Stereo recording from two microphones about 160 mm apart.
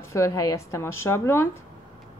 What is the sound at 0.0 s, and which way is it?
A woman's voice, 15° left (ahead or behind).